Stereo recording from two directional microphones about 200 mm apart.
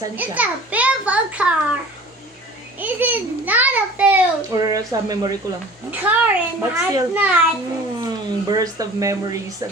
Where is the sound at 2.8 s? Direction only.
10° right (ahead or behind).